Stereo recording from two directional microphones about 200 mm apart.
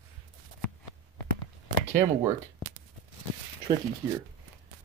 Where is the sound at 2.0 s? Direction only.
15° right (ahead or behind).